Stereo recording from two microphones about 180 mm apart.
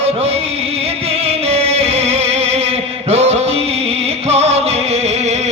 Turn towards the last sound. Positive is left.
turn(degrees=-35)  # may be behind; listen again after turning